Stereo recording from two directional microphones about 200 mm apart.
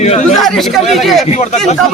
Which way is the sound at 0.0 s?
35° left (ahead or behind).